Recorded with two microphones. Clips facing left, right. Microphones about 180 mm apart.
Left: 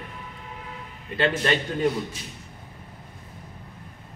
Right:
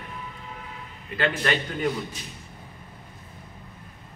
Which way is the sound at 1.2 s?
30° left (ahead or behind).